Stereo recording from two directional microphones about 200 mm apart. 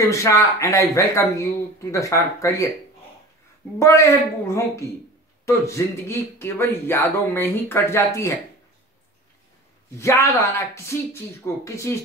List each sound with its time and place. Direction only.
0.0 s speech: 15° left (ahead or behind)
3.8 s speech: 15° left (ahead or behind)
9.8 s speech: 15° left (ahead or behind)